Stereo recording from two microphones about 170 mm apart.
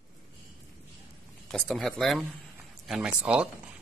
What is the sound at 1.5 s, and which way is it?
Speech, 5° left (ahead or behind).